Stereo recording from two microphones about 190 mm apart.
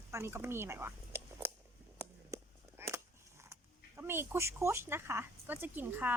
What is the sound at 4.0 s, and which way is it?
Speech, 10° right (ahead or behind).